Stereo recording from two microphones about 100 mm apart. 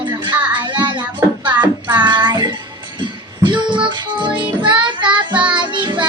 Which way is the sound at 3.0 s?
50° right (ahead or behind).